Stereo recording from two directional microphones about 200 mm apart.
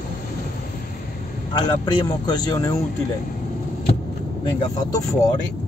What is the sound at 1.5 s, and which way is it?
A man's voice, 20° left (ahead or behind).